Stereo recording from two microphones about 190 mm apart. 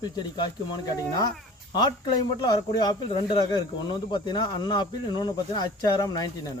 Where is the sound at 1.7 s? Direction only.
20° left (ahead or behind).